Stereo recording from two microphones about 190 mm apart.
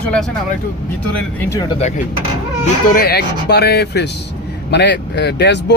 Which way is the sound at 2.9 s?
55° left (ahead or behind).